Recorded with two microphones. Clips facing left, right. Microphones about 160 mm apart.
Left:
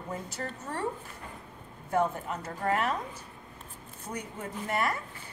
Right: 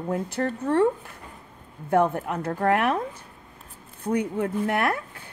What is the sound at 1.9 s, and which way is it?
A woman's voice, 60° right (ahead or behind).